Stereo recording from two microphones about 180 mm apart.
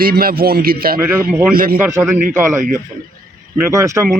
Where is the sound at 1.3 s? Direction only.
10° right (ahead or behind).